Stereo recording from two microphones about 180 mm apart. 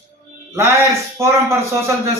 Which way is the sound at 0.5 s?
15° right (ahead or behind).